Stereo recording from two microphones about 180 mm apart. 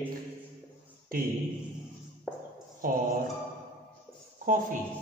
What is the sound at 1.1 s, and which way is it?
Speech, 55° right (ahead or behind).